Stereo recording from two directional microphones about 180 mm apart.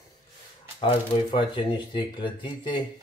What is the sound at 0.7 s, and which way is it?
Speech, 30° left (ahead or behind).